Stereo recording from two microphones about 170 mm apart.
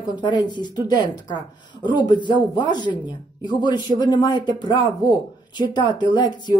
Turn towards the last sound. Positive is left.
turn(degrees=25)  # may be behind; listen again after turning